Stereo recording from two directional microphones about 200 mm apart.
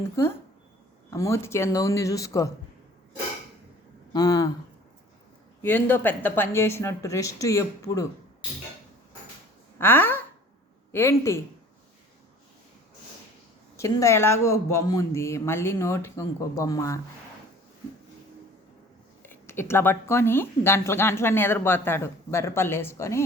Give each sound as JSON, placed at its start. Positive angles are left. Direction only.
{"t": 0.0, "sound": "speech", "side_deg": 15}
{"t": 4.1, "sound": "speech", "side_deg": 20}
{"t": 5.6, "sound": "speech", "side_deg": 10}
{"t": 9.7, "sound": "speech", "side_deg": 10}
{"t": 13.7, "sound": "speech", "side_deg": 15}
{"t": 19.2, "sound": "speech", "side_deg": 10}